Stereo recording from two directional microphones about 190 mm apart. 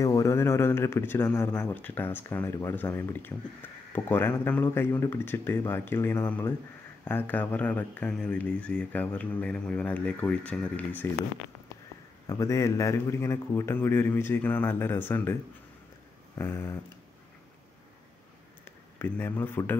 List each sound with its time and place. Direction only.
0.0 s speech: 15° left (ahead or behind)
12.3 s speech: 15° left (ahead or behind)
16.3 s speech: 15° left (ahead or behind)
18.9 s speech: 10° left (ahead or behind)